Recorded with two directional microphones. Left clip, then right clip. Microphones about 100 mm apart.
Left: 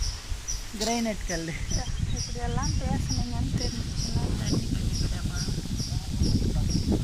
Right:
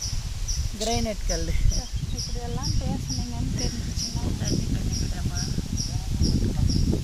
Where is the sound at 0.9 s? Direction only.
40° right (ahead or behind).